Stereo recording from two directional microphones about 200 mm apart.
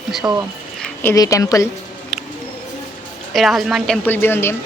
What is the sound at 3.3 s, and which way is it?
A woman's voice, centre (ahead or behind).